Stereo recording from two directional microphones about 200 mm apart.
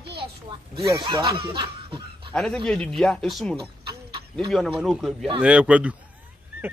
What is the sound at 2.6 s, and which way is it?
Speech, centre (ahead or behind).